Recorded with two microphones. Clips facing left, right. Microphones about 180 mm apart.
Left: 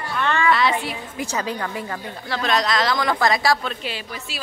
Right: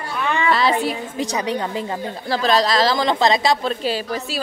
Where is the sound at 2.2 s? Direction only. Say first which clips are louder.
Right 4 dB; 35° right (ahead or behind).